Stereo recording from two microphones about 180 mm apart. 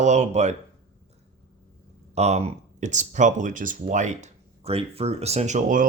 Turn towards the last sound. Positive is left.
turn(degrees=-45)  # may be behind; listen again after turning